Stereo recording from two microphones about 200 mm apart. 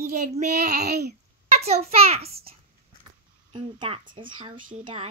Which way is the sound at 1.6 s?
30° right (ahead or behind).